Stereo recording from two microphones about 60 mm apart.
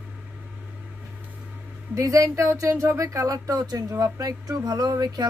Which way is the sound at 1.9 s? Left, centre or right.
Right.